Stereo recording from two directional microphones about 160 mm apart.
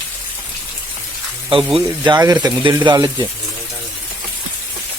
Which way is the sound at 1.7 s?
30° right (ahead or behind).